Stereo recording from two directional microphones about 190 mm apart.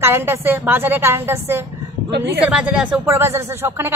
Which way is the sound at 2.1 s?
65° right (ahead or behind).